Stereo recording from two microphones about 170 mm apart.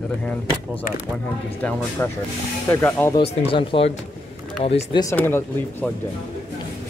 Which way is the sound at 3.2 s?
35° left (ahead or behind).